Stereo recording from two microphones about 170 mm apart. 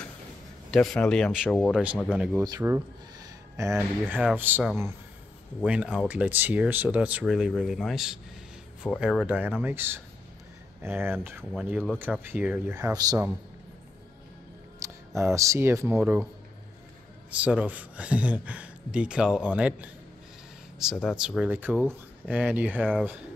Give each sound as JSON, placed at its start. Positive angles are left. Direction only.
{"t": 0.7, "sound": "speech", "side_deg": 5}
{"t": 2.0, "sound": "speech", "side_deg": 5}
{"t": 2.6, "sound": "speech", "side_deg": -15}
{"t": 14.8, "sound": "speech", "side_deg": -15}
{"t": 17.3, "sound": "speech", "side_deg": -10}
{"t": 20.9, "sound": "speech", "side_deg": 0}